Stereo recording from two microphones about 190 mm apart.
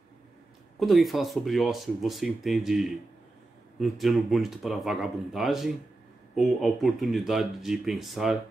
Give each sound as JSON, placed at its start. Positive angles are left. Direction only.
{"t": 0.7, "sound": "speech", "side_deg": 0}